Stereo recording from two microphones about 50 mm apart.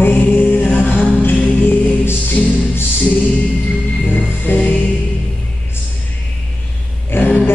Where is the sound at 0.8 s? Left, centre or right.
Left.